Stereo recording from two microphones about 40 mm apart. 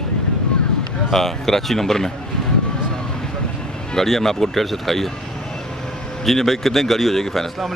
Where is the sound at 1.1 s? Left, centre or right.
Centre.